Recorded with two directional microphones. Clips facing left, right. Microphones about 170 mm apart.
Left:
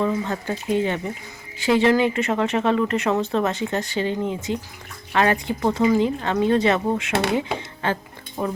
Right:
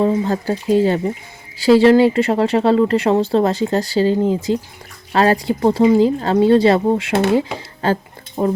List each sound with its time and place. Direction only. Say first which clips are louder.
0.0 s speech: right 6 dB; 30° right (ahead or behind)